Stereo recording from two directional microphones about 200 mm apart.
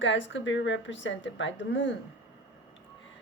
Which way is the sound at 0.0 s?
65° left (ahead or behind).